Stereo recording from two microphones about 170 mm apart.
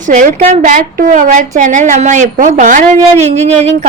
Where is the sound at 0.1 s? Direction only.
45° right (ahead or behind).